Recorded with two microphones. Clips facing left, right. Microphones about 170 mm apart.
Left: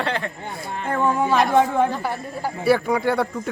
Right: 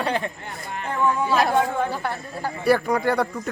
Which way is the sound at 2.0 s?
10° left (ahead or behind).